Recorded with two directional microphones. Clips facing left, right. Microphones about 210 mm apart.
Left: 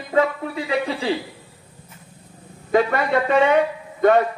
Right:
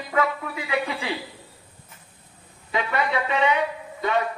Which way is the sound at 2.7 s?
45° left (ahead or behind).